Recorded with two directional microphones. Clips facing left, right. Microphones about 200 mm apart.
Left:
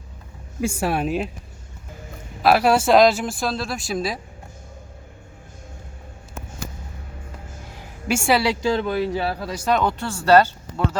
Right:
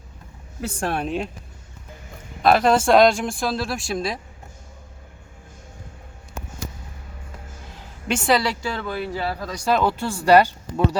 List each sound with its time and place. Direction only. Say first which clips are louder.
0.6 s speech: left 3 dB; 10° left (ahead or behind)
2.4 s speech: even; 5° left (ahead or behind)
7.8 s a sound: left 2 dB; 10° left (ahead or behind)
8.6 s speech: left 6 dB; 20° left (ahead or behind)
9.6 s speech: right 1 dB; 5° right (ahead or behind)